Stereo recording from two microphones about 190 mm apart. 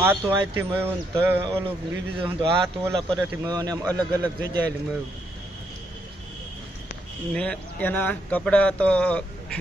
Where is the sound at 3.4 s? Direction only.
20° right (ahead or behind).